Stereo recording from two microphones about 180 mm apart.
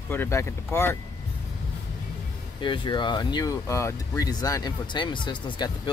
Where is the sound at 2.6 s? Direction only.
25° left (ahead or behind).